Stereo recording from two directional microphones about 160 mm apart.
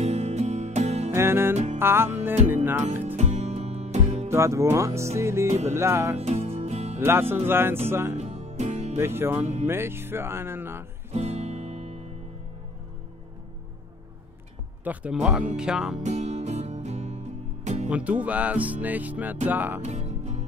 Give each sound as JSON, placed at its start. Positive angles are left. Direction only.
{"t": 0.0, "sound": "music", "side_deg": -45}
{"t": 1.1, "sound": "music", "side_deg": -15}
{"t": 3.2, "sound": "music", "side_deg": -45}
{"t": 4.3, "sound": "music", "side_deg": -20}
{"t": 6.1, "sound": "music", "side_deg": -40}
{"t": 7.0, "sound": "music", "side_deg": -15}
{"t": 8.2, "sound": "music", "side_deg": -45}
{"t": 8.9, "sound": "music", "side_deg": -15}
{"t": 11.1, "sound": "music", "side_deg": -45}
{"t": 14.9, "sound": "music", "side_deg": -10}
{"t": 15.5, "sound": "speech", "side_deg": -5}
{"t": 16.0, "sound": "music", "side_deg": -45}
{"t": 17.8, "sound": "music", "side_deg": -10}
{"t": 19.8, "sound": "music", "side_deg": -45}